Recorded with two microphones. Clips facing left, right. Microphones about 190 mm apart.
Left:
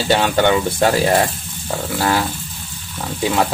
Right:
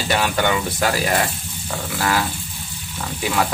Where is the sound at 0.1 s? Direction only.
25° left (ahead or behind).